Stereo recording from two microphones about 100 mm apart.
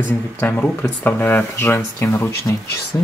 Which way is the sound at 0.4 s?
20° left (ahead or behind).